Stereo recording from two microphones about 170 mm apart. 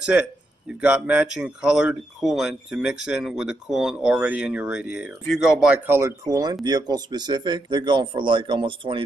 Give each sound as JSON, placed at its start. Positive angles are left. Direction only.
{"t": 0.1, "sound": "speech", "side_deg": -10}